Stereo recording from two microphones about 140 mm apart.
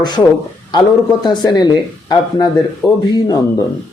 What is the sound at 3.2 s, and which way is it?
Speech, 25° left (ahead or behind).